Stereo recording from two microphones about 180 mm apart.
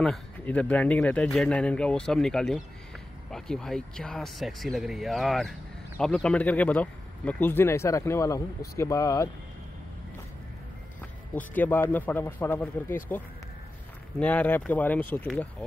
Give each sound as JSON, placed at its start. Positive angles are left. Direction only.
{"t": 0.0, "sound": "speech", "side_deg": 5}
{"t": 11.3, "sound": "speech", "side_deg": 10}
{"t": 14.2, "sound": "speech", "side_deg": 10}